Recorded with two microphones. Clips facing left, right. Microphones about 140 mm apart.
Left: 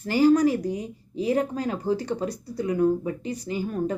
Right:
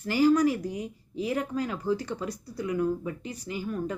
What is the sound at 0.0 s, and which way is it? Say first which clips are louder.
Speech: left 3 dB; 35° left (ahead or behind).